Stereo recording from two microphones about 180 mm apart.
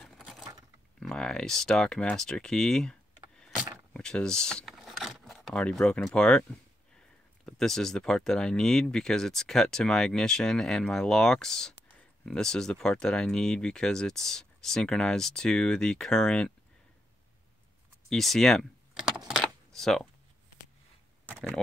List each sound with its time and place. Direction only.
0.0 s a sound: centre (ahead or behind)
0.9 s speech: 5° left (ahead or behind)
3.3 s vehicle: centre (ahead or behind)
3.9 s a sound: 5° left (ahead or behind)
7.4 s speech: 5° left (ahead or behind)
18.1 s speech: centre (ahead or behind)
19.0 s typing: centre (ahead or behind)